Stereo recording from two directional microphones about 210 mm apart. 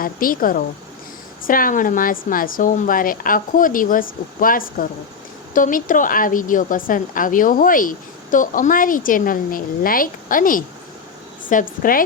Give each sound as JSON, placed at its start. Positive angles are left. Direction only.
{"t": 0.0, "sound": "a woman's voice", "side_deg": 40}